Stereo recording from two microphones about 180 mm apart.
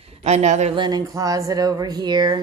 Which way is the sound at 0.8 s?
20° right (ahead or behind).